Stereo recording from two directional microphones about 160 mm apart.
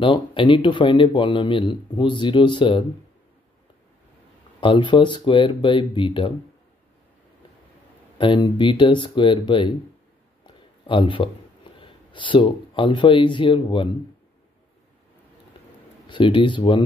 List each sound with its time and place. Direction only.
0.0 s speech: 30° left (ahead or behind)
4.6 s speech: 30° left (ahead or behind)
8.2 s speech: 30° left (ahead or behind)
16.1 s speech: 30° left (ahead or behind)